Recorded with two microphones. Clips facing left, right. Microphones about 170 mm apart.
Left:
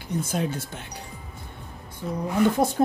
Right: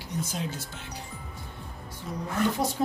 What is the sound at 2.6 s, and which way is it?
Speech, 50° left (ahead or behind).